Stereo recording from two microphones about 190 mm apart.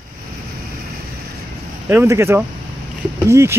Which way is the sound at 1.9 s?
15° right (ahead or behind).